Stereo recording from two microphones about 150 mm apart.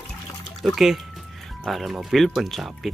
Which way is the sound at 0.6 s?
Centre (ahead or behind).